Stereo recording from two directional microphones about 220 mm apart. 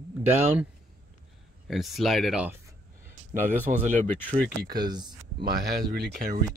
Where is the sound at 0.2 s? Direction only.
10° right (ahead or behind).